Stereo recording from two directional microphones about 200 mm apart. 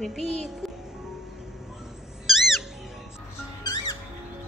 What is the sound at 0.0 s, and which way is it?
Music, centre (ahead or behind).